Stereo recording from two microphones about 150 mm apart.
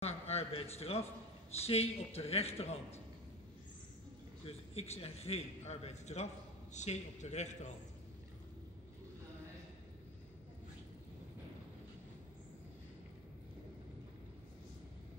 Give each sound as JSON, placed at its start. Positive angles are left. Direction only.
{"t": 0.0, "sound": "a sound", "side_deg": 45}
{"t": 1.5, "sound": "a man's voice", "side_deg": 45}
{"t": 4.5, "sound": "a man's voice", "side_deg": 45}